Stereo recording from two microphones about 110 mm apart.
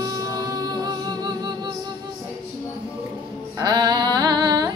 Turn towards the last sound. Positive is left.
turn(degrees=-40)  # may be behind; listen again after turning